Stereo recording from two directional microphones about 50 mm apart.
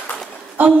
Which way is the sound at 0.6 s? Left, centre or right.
Right.